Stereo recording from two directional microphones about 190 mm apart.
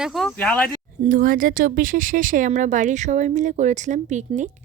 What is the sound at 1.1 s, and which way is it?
Speech, 45° right (ahead or behind).